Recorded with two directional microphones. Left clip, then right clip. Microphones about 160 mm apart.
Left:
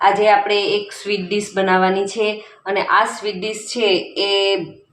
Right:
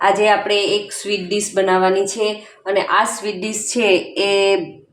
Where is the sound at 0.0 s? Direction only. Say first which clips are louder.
Left 1 dB; 15° right (ahead or behind).